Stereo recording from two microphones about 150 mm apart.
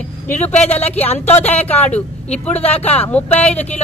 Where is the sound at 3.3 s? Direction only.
45° left (ahead or behind).